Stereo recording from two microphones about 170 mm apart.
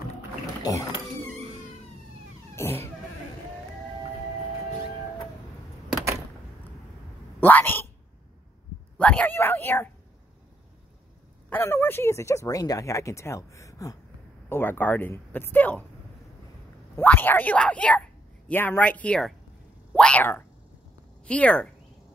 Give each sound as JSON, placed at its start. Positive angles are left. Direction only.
{"t": 0.6, "sound": "speech", "side_deg": 20}
{"t": 2.5, "sound": "cat", "side_deg": 15}
{"t": 7.3, "sound": "a sound", "side_deg": 10}
{"t": 8.9, "sound": "a sound", "side_deg": 5}
{"t": 11.5, "sound": "speech", "side_deg": 15}
{"t": 16.9, "sound": "speech", "side_deg": 10}